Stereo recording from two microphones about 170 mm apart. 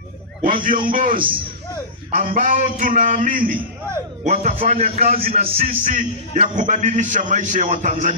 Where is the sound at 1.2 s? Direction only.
30° right (ahead or behind).